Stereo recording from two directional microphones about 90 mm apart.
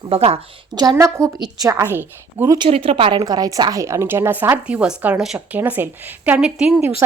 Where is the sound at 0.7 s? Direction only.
50° right (ahead or behind).